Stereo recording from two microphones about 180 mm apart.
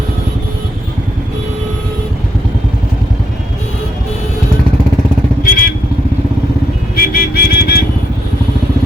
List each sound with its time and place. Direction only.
5.4 s vehicle: 50° left (ahead or behind)
6.9 s music: 55° left (ahead or behind)